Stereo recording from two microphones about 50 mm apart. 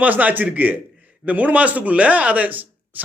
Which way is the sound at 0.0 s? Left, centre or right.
Right.